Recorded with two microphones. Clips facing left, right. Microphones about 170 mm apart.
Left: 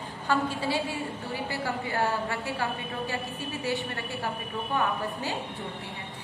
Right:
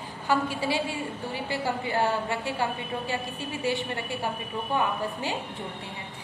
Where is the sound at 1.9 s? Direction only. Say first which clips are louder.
Right 2 dB; 20° right (ahead or behind).